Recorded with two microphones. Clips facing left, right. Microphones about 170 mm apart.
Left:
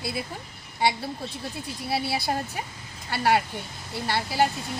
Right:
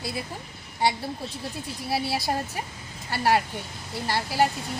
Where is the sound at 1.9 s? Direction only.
Centre (ahead or behind).